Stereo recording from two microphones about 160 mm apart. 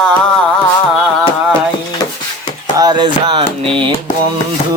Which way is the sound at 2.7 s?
25° right (ahead or behind).